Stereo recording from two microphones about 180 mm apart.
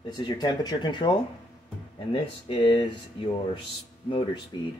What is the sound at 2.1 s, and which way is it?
Speech, 30° left (ahead or behind).